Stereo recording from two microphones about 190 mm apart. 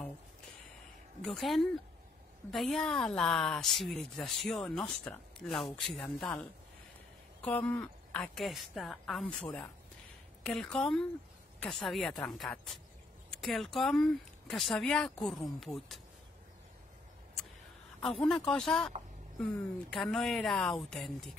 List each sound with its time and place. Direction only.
1.2 s speech: centre (ahead or behind)
7.4 s speech: 10° left (ahead or behind)
18.2 s speech: 5° left (ahead or behind)